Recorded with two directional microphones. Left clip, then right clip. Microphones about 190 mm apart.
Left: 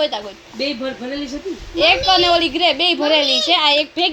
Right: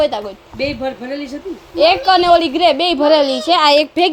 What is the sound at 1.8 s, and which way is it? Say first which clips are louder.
A child's voice: right 2 dB; 30° right (ahead or behind).